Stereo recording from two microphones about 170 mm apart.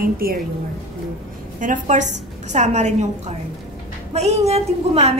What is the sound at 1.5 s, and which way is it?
A woman's voice, 50° right (ahead or behind).